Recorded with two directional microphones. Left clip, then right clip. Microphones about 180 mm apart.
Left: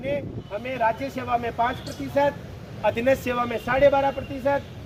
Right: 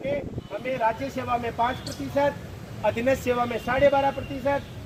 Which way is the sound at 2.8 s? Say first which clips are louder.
Left 2 dB; 10° right (ahead or behind).